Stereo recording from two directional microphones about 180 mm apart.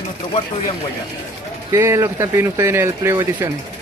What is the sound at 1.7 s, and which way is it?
Speech, 15° right (ahead or behind).